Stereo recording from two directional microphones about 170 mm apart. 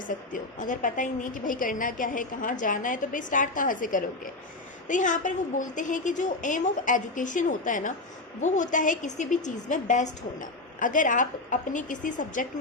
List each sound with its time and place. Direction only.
0.1 s a woman's voice: 50° left (ahead or behind)